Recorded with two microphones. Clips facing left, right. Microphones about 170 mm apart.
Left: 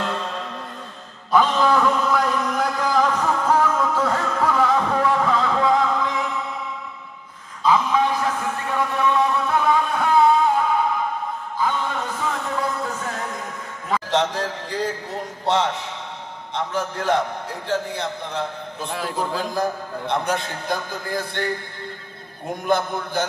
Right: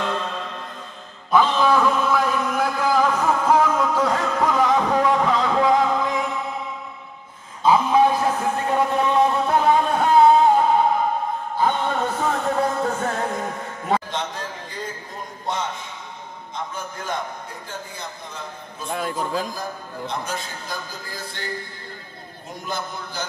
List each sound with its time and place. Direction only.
0.0 s music: 5° left (ahead or behind)
1.3 s a sound: centre (ahead or behind); by 5.8 s 15° right (ahead or behind)
5.9 s chant: 20° right (ahead or behind)
7.6 s a sound: 25° right (ahead or behind)
11.8 s music: 45° right (ahead or behind)
14.1 s a sound: 85° left
17.6 s a man's voice: 75° left (ahead or behind)
18.9 s a man's voice: centre (ahead or behind)
20.1 s a man's voice: 60° left (ahead or behind)
22.7 s a man's voice: 55° left (ahead or behind)